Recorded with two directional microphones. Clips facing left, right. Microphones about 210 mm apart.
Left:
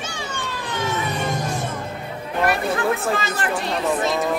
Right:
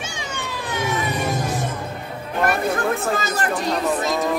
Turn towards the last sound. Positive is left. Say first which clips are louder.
# right 1 dB
turn(degrees=-40)  # may be behind; listen again after turning